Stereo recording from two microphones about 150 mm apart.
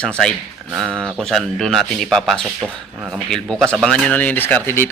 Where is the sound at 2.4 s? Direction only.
10° right (ahead or behind).